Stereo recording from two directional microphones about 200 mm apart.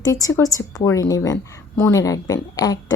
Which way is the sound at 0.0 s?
15° left (ahead or behind).